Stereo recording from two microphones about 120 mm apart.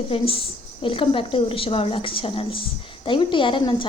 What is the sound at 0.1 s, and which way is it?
A woman's voice, 50° left (ahead or behind).